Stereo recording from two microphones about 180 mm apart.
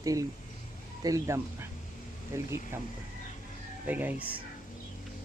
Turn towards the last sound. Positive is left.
turn(degrees=-10)  # may be behind; listen again after turning